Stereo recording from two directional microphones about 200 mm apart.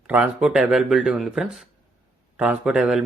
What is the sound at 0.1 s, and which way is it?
Speech, 5° right (ahead or behind).